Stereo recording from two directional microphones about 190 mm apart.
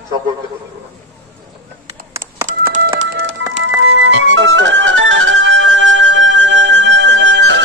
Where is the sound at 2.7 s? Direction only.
40° right (ahead or behind).